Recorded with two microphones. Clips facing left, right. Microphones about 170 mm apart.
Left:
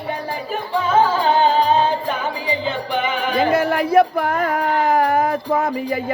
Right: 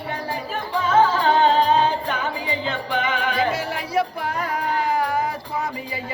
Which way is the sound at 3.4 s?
55° left (ahead or behind).